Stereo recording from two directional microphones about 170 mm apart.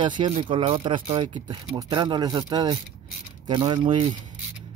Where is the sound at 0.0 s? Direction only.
25° right (ahead or behind).